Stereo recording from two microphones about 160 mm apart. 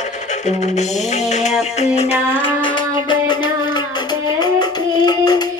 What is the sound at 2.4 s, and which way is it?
Music, 30° left (ahead or behind).